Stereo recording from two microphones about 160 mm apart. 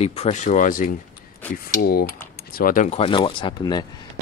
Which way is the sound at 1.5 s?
65° left (ahead or behind).